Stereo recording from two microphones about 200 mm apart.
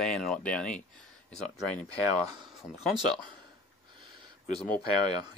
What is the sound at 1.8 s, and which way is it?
Speech, 20° right (ahead or behind).